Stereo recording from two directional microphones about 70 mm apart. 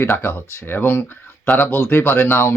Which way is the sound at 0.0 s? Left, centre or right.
Left.